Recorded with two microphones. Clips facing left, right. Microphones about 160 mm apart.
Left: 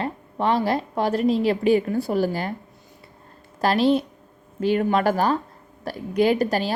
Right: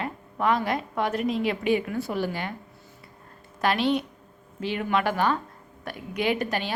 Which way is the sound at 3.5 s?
35° left (ahead or behind).